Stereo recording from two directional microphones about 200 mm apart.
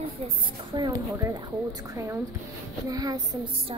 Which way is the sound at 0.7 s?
20° right (ahead or behind).